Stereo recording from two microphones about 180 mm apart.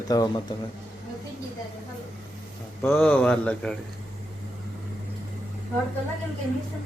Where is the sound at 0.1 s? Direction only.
20° left (ahead or behind).